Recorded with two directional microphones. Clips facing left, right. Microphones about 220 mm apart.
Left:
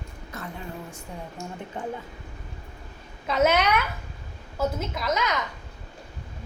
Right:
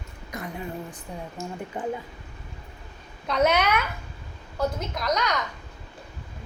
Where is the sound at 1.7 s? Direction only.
10° right (ahead or behind).